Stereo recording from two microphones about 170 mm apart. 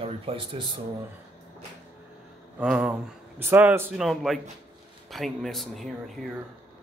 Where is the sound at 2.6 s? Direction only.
5° right (ahead or behind).